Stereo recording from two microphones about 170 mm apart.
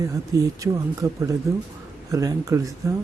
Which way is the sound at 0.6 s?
20° right (ahead or behind).